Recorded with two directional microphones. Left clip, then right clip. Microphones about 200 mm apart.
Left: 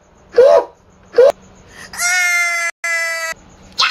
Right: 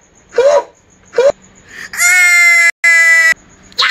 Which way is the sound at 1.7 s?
10° right (ahead or behind).